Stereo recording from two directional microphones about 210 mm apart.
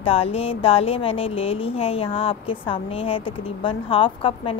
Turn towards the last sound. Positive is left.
turn(degrees=25)  # may be behind; listen again after turning